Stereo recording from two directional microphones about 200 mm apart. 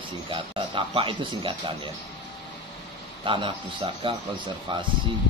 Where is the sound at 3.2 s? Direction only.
25° right (ahead or behind).